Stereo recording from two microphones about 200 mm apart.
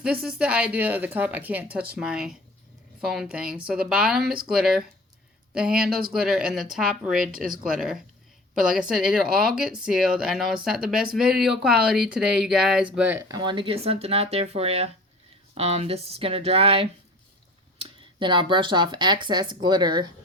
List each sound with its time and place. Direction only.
0.0 s speech: 5° right (ahead or behind); by 20.1 s 20° right (ahead or behind)